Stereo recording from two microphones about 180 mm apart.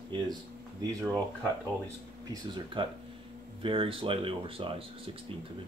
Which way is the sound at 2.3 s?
25° right (ahead or behind).